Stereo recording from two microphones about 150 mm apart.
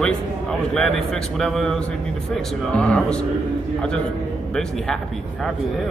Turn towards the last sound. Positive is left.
turn(degrees=5)  # may be behind; listen again after turning